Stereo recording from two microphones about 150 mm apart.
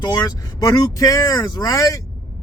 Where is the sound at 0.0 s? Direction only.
30° left (ahead or behind).